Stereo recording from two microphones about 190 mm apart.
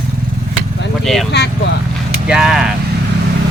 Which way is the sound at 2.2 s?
5° right (ahead or behind).